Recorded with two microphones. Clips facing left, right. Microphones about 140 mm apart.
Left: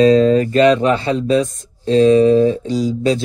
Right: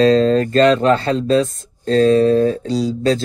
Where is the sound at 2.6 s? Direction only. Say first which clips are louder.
Left 1 dB; 35° right (ahead or behind).